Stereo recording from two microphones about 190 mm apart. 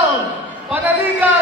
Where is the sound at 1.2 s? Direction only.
10° right (ahead or behind).